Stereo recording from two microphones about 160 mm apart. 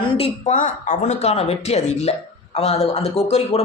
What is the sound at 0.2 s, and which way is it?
Speech, 50° left (ahead or behind).